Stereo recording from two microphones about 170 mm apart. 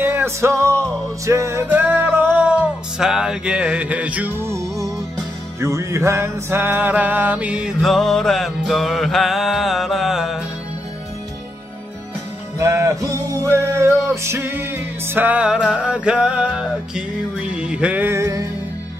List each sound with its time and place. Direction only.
0.0 s music: 15° right (ahead or behind)
12.5 s music: 15° right (ahead or behind)